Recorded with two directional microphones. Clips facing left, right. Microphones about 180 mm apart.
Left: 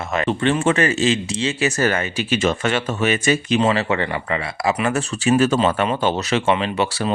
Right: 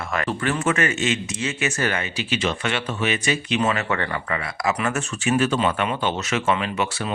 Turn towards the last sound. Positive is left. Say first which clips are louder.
# left 4 dB
turn(degrees=30)  # may be behind; listen again after turning